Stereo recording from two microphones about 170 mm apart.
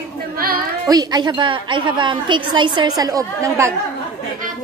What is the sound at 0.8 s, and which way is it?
A woman's voice, 25° right (ahead or behind).